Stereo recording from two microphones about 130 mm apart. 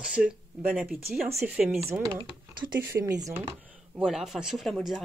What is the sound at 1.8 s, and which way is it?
Speech, 20° right (ahead or behind).